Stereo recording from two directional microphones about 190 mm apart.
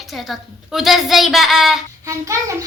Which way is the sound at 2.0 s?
15° right (ahead or behind).